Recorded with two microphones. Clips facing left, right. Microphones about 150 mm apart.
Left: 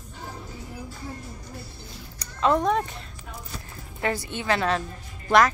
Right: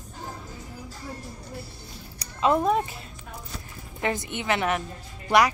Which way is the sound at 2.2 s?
10° right (ahead or behind).